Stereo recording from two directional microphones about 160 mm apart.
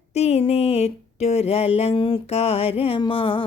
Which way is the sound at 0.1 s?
40° left (ahead or behind).